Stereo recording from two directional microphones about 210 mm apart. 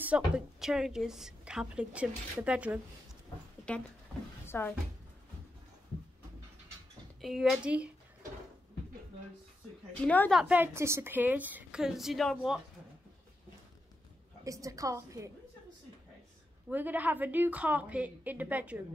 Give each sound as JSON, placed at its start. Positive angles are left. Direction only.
{"t": 0.0, "sound": "a woman's voice", "side_deg": -5}
{"t": 3.7, "sound": "a woman's voice", "side_deg": 5}
{"t": 7.2, "sound": "a woman's voice", "side_deg": 0}
{"t": 10.0, "sound": "a woman's voice", "side_deg": 5}
{"t": 10.4, "sound": "a woman's voice", "side_deg": -10}
{"t": 14.4, "sound": "a woman's voice", "side_deg": -15}
{"t": 16.6, "sound": "a woman's voice", "side_deg": -10}